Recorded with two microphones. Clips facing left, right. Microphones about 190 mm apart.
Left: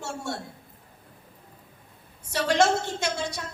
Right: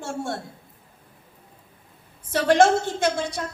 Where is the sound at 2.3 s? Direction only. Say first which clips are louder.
Right 5 dB; 50° right (ahead or behind).